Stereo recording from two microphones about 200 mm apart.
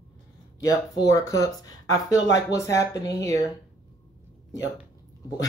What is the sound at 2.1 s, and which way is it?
Speech, 65° left (ahead or behind).